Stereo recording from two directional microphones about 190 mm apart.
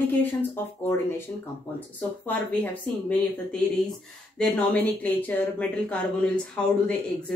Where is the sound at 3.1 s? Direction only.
5° left (ahead or behind).